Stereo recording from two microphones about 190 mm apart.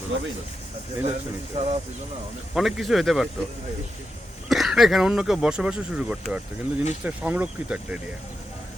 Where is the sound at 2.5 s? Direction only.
Centre (ahead or behind).